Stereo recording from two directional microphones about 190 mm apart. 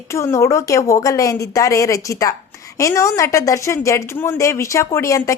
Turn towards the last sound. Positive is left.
turn(degrees=15)  # may be behind; listen again after turning